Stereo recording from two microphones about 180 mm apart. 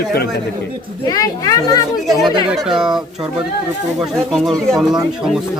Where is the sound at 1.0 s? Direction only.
20° left (ahead or behind).